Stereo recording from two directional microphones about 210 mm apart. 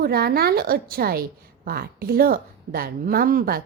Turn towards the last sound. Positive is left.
turn(degrees=-45)  # may be behind; listen again after turning